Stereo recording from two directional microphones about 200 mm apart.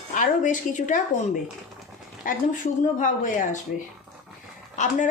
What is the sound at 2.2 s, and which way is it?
A woman's voice, 40° left (ahead or behind).